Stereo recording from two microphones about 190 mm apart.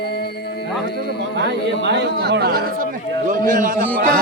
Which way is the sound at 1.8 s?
65° right (ahead or behind).